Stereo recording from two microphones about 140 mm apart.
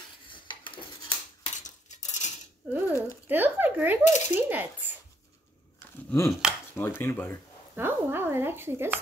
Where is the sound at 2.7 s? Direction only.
15° right (ahead or behind).